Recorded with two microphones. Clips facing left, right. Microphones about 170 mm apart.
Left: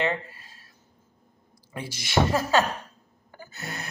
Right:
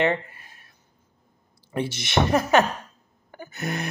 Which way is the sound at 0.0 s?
20° right (ahead or behind).